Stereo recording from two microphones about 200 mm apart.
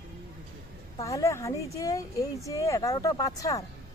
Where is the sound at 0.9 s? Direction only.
15° left (ahead or behind).